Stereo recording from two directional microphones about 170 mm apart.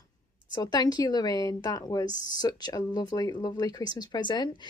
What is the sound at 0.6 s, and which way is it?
Speech, 25° left (ahead or behind).